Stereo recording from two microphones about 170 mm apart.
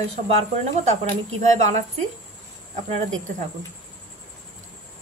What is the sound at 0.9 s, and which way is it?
Speech, 40° right (ahead or behind).